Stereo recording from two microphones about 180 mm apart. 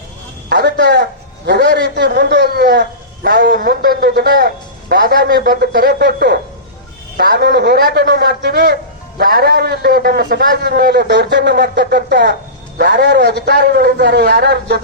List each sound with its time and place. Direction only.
0.5 s a man's voice: 70° right (ahead or behind)